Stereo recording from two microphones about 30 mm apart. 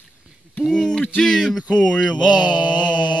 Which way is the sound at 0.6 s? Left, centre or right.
Left.